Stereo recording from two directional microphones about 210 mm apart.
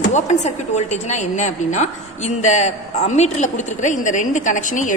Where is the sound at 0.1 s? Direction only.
35° left (ahead or behind).